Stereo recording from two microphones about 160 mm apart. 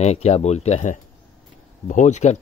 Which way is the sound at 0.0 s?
40° left (ahead or behind).